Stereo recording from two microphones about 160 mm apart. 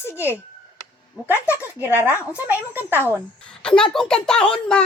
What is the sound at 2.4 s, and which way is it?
Speech, 10° right (ahead or behind).